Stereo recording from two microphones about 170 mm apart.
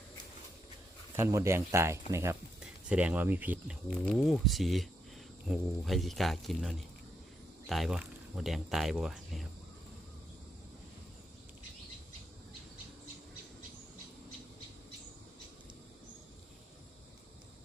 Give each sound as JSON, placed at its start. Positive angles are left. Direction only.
{"t": 1.1, "sound": "speech", "side_deg": -15}